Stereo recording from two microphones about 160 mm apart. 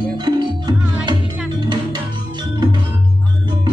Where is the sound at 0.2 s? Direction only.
25° right (ahead or behind).